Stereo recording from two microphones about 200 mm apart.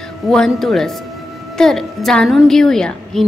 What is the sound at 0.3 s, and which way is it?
Speech, 5° left (ahead or behind).